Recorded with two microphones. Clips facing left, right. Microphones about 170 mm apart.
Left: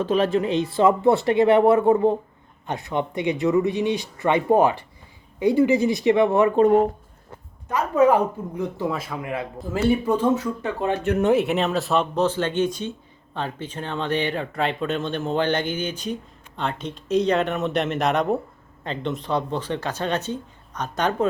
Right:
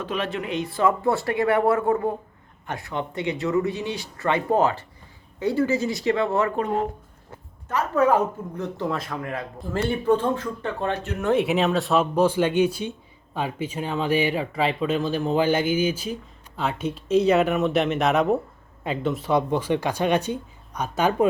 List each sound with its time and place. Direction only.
0.0 s speech: 35° left (ahead or behind); by 6.5 s 15° left (ahead or behind)
7.7 s speech: 15° left (ahead or behind); by 21.2 s 10° right (ahead or behind)